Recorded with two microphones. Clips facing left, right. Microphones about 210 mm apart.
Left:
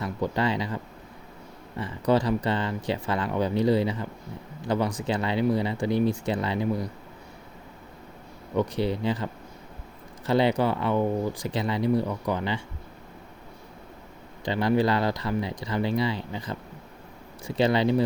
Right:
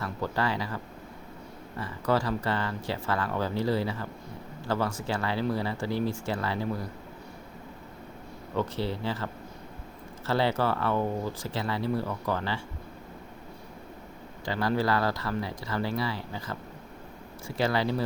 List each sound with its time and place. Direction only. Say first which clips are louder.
0.0 s speech: left 4 dB; 20° left (ahead or behind)
1.8 s speech: left 4 dB; 20° left (ahead or behind)
8.5 s speech: left 5 dB; 15° left (ahead or behind)
14.4 s speech: left 4 dB; 20° left (ahead or behind)